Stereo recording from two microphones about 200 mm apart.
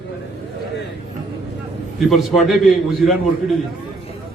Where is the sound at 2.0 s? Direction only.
Centre (ahead or behind).